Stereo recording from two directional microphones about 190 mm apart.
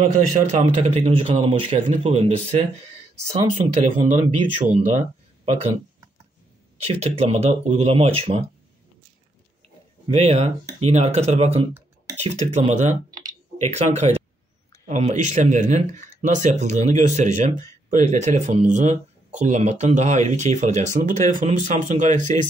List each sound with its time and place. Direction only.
0.0 s speech: 35° right (ahead or behind)
6.9 s speech: 35° right (ahead or behind)
10.0 s speech: 30° right (ahead or behind)